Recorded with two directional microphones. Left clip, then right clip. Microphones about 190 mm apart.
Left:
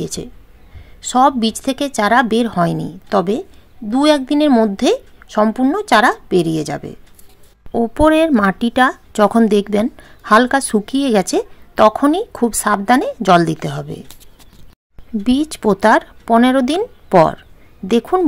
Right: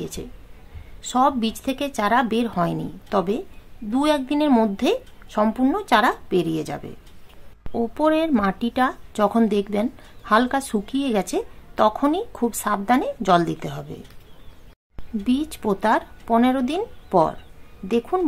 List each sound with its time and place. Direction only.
0.0 s speech: 35° left (ahead or behind)
15.2 s speech: 35° left (ahead or behind)